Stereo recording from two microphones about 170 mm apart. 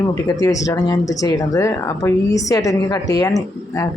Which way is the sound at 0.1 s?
20° left (ahead or behind).